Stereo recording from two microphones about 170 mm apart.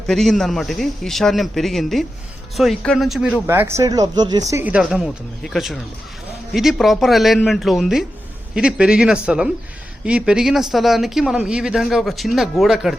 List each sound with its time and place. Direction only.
0.1 s speech: centre (ahead or behind)
3.4 s speech: 15° right (ahead or behind)
4.7 s speech: 5° right (ahead or behind)